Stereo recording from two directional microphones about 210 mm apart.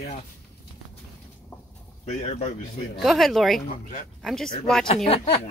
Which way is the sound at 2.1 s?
30° left (ahead or behind).